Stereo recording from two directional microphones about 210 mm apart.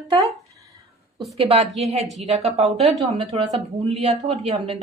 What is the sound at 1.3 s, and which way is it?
A woman's voice, 30° right (ahead or behind).